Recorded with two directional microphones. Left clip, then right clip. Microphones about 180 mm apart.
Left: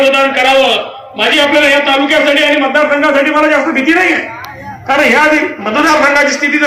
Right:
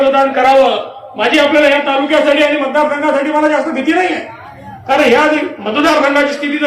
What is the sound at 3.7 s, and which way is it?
Speech, 65° right (ahead or behind).